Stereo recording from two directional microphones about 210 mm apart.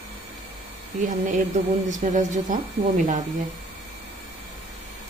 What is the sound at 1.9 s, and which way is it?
Speech, 35° right (ahead or behind).